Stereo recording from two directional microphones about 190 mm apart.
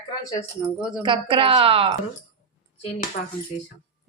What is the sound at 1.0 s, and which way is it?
Speech, 25° right (ahead or behind).